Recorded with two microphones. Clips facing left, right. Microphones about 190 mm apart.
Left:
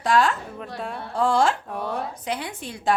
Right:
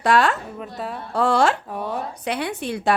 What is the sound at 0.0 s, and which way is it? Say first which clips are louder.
Speech: right 2 dB; 65° right (ahead or behind).